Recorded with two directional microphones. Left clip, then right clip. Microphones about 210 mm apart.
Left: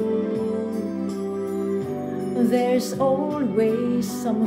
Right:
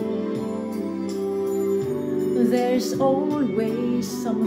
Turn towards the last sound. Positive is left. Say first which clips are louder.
# left 2 dB
turn(degrees=15)  # may be behind; listen again after turning